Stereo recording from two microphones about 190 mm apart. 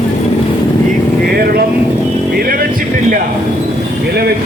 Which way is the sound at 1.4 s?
55° right (ahead or behind).